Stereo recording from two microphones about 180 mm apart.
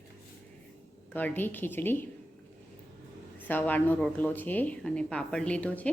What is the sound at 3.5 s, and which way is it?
A woman's voice, 10° left (ahead or behind).